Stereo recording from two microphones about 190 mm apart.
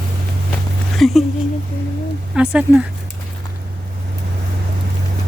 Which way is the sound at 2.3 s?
5° right (ahead or behind).